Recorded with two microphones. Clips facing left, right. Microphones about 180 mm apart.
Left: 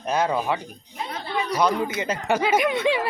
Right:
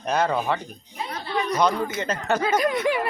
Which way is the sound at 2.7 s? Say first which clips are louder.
Left 1 dB; 25° left (ahead or behind).